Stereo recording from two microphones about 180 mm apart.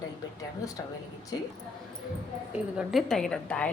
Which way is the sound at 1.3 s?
20° left (ahead or behind).